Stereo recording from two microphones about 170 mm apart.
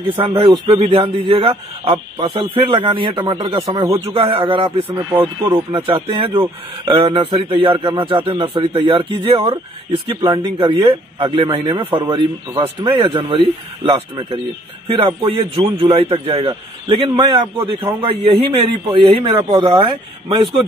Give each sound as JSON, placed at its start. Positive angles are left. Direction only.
{"t": 0.1, "sound": "a man's voice", "side_deg": -35}
{"t": 3.5, "sound": "speech", "side_deg": -20}
{"t": 3.8, "sound": "a man's voice", "side_deg": -35}
{"t": 4.8, "sound": "speech", "side_deg": -10}
{"t": 5.7, "sound": "a man's voice", "side_deg": -30}